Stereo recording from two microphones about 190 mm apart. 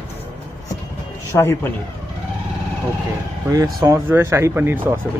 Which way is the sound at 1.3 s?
15° left (ahead or behind).